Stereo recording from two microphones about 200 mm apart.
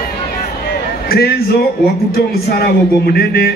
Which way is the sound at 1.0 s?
50° left (ahead or behind).